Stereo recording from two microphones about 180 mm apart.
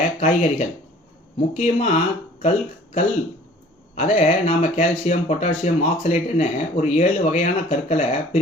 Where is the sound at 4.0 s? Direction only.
40° left (ahead or behind).